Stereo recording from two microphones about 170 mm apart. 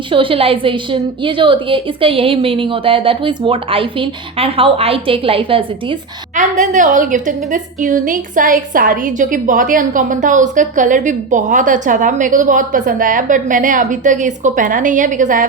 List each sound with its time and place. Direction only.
0.1 s a woman's voice: 30° right (ahead or behind)
6.3 s a woman's voice: 45° right (ahead or behind)